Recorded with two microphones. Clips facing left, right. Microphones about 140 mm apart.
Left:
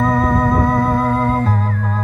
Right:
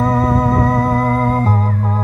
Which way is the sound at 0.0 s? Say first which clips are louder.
Right 1 dB; 35° right (ahead or behind).